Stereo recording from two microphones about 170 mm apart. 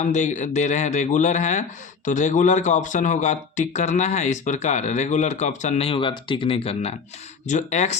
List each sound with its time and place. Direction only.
0.0 s a man's voice: 45° left (ahead or behind)